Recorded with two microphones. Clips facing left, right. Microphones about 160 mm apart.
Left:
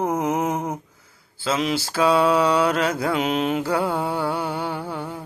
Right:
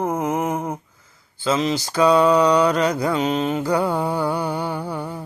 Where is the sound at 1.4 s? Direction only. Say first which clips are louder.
Right 2 dB; 5° left (ahead or behind).